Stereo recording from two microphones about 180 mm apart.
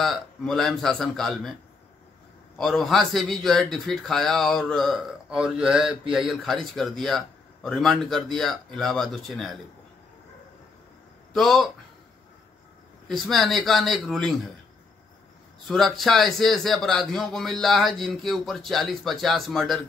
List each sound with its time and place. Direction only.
0.0 s a man's voice: centre (ahead or behind)
2.5 s a man's voice: centre (ahead or behind)
11.3 s a man's voice: centre (ahead or behind)
13.1 s a man's voice: centre (ahead or behind)
15.7 s a man's voice: centre (ahead or behind)